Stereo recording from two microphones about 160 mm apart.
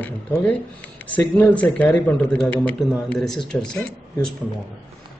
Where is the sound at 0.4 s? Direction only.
10° left (ahead or behind).